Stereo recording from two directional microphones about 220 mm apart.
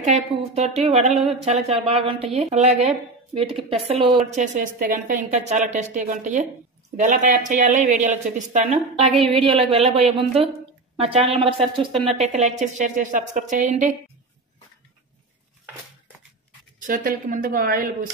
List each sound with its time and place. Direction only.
0.0 s a woman's voice: 30° right (ahead or behind)
4.6 s a woman's voice: 40° right (ahead or behind)
16.8 s a woman's voice: 40° right (ahead or behind)